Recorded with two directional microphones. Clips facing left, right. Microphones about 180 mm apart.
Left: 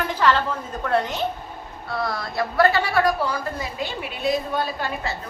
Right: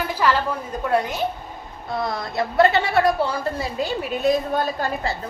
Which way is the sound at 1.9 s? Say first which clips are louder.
Right 1 dB; 20° right (ahead or behind).